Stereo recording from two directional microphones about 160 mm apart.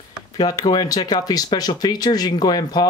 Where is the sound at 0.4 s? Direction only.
25° left (ahead or behind).